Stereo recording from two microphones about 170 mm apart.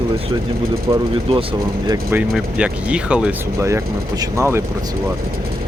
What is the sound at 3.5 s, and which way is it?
Speech, 15° right (ahead or behind).